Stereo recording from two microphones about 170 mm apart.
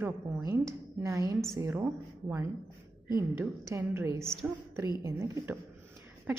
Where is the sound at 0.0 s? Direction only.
15° right (ahead or behind).